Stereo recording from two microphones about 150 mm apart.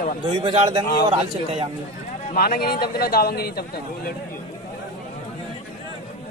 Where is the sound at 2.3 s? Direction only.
85° left.